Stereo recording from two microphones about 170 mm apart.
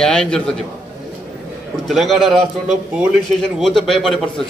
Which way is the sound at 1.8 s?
Centre (ahead or behind).